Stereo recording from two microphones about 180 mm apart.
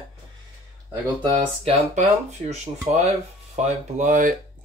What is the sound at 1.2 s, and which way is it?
Speech, 25° right (ahead or behind).